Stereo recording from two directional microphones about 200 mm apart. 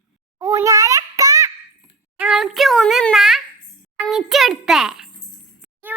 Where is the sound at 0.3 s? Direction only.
15° right (ahead or behind).